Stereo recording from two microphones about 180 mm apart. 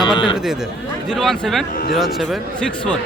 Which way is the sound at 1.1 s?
Centre (ahead or behind).